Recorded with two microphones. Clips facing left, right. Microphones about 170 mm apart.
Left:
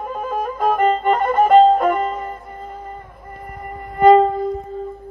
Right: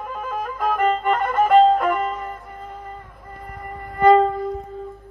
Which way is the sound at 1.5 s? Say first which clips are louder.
Left 2 dB; 25° left (ahead or behind).